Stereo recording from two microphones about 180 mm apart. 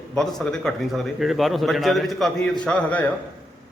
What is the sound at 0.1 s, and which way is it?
A man's voice, 5° left (ahead or behind).